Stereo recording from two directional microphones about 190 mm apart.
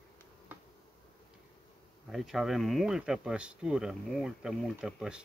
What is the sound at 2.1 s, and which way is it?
Speech, centre (ahead or behind).